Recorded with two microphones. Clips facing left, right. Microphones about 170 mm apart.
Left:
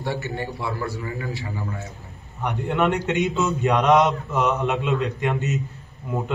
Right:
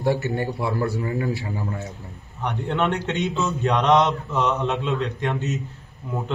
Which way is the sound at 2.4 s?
10° left (ahead or behind).